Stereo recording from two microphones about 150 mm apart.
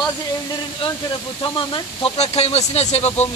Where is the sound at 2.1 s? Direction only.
45° left (ahead or behind).